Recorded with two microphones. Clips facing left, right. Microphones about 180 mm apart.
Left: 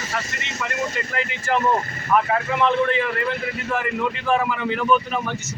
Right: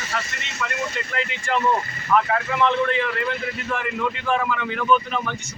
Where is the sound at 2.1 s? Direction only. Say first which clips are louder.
Left 1 dB; 10° left (ahead or behind).